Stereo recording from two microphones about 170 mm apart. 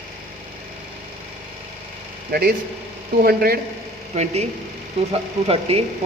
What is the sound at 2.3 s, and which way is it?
Speech, 65° right (ahead or behind).